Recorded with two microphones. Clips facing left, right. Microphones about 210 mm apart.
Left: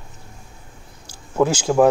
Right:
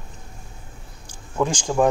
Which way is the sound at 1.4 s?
10° left (ahead or behind).